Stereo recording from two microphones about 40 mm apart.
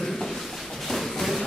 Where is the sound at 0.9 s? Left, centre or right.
Centre.